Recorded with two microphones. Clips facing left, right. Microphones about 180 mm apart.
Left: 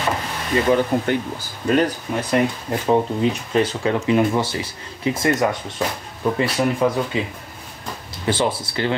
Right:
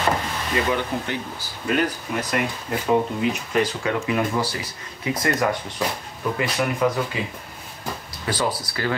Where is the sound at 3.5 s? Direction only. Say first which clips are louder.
Left 3 dB; 30° left (ahead or behind).